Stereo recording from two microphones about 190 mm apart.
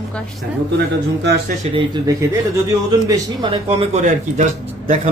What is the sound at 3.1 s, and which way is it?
Speech, 25° right (ahead or behind).